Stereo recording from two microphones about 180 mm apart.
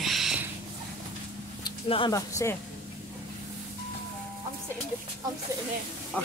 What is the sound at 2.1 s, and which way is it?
Speech, 15° left (ahead or behind).